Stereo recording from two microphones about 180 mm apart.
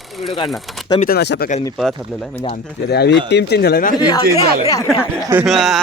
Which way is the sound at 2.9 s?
70° left (ahead or behind).